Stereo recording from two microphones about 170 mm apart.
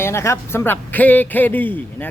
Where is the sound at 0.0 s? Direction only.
15° left (ahead or behind).